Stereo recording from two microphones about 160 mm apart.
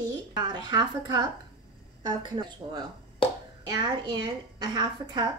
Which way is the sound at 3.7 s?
25° right (ahead or behind).